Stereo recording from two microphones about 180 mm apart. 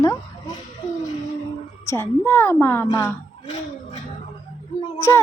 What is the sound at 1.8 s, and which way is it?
Speech, 15° left (ahead or behind).